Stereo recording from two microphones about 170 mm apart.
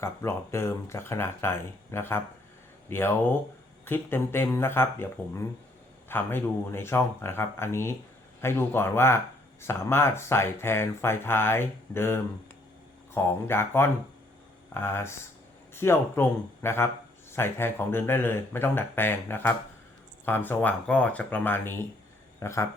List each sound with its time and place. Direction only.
0.0 s speech: 15° left (ahead or behind)